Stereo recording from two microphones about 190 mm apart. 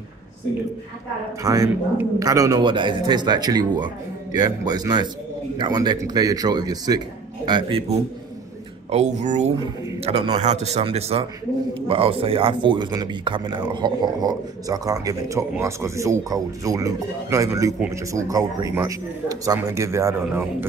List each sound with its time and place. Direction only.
1.4 s speech: 15° right (ahead or behind)
8.9 s a man's voice: 35° right (ahead or behind); by 20.4 s 15° right (ahead or behind)